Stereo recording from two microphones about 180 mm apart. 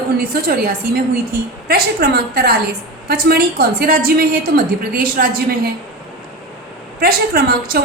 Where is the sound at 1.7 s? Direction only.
60° right (ahead or behind).